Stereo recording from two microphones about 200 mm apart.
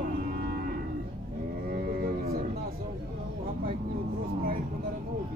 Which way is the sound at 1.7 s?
50° right (ahead or behind).